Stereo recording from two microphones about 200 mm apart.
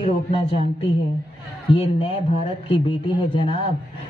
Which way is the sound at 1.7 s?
25° left (ahead or behind).